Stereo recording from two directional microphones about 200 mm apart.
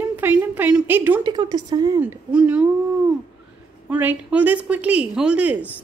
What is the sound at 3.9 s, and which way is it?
A woman's voice, 10° right (ahead or behind).